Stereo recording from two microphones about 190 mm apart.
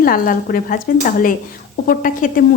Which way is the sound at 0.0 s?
50° left (ahead or behind).